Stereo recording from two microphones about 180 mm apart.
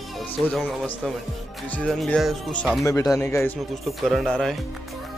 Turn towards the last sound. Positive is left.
turn(degrees=0)  # may be behind; listen again after turning